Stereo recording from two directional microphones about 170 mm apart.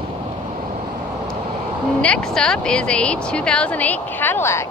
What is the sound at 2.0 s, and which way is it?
Speech, 5° left (ahead or behind).